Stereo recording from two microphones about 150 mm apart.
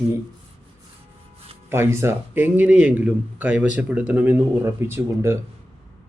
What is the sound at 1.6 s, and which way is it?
A man's voice, 15° right (ahead or behind).